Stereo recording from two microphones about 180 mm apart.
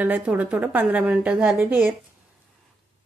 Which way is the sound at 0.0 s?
10° right (ahead or behind).